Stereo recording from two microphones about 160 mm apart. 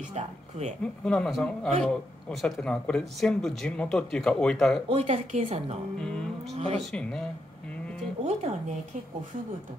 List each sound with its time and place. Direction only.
0.1 s a woman's voice: 45° right (ahead or behind)
1.0 s speech: 5° left (ahead or behind)
4.8 s a woman's voice: 40° right (ahead or behind)
5.9 s speech: 5° left (ahead or behind)
6.5 s a woman's voice: 40° right (ahead or behind)
6.8 s speech: 5° left (ahead or behind)
8.2 s a woman's voice: 45° right (ahead or behind)